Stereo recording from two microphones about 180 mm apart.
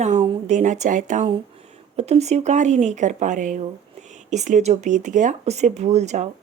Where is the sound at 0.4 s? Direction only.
40° right (ahead or behind).